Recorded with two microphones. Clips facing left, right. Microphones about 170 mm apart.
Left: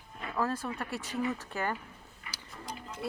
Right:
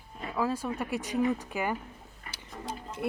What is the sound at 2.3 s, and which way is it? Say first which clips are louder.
Tick-tock: right 4 dB; 25° right (ahead or behind).